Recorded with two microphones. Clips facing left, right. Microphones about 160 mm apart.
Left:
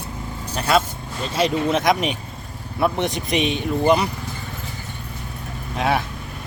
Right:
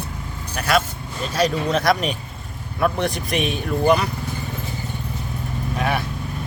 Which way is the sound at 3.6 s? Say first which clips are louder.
Right 1 dB; 20° left (ahead or behind).